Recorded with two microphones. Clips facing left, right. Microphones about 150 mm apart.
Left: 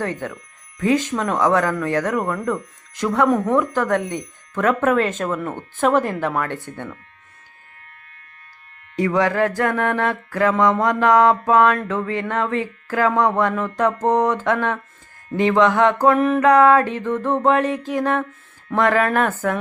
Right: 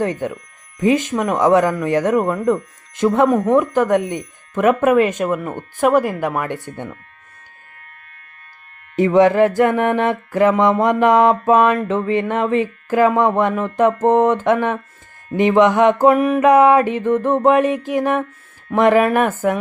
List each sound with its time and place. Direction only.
0.0 s speech: 15° right (ahead or behind)
9.0 s mantra: 20° right (ahead or behind)
15.3 s speech: 20° right (ahead or behind)